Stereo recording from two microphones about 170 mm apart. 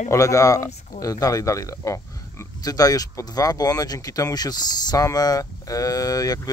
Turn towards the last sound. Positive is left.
turn(degrees=20)  # may be behind; listen again after turning